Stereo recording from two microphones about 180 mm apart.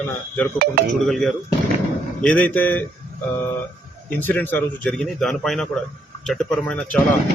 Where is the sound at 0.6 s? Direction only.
60° right (ahead or behind).